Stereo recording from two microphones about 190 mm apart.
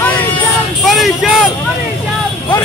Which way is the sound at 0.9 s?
Centre (ahead or behind).